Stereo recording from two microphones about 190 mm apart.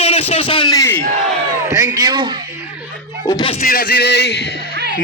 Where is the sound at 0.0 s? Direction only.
30° left (ahead or behind); by 1.0 s 15° left (ahead or behind).